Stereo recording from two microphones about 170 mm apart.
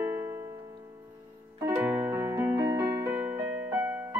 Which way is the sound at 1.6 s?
10° right (ahead or behind).